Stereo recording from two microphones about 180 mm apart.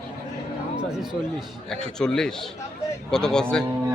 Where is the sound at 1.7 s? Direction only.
5° left (ahead or behind).